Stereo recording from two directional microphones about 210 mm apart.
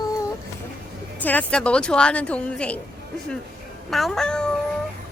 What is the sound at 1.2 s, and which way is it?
Speech, 10° left (ahead or behind).